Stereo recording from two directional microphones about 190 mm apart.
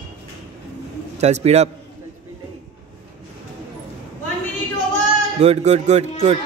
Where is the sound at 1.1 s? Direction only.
35° right (ahead or behind).